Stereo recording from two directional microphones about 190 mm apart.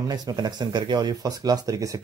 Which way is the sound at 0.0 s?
20° right (ahead or behind).